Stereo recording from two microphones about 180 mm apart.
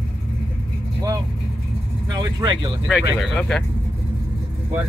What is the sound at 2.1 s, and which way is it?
Speech, 25° right (ahead or behind).